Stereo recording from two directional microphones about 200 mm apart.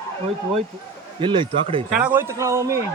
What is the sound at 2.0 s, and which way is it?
Speech, 10° right (ahead or behind).